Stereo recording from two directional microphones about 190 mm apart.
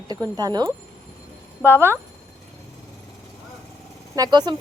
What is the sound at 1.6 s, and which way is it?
Speech, centre (ahead or behind).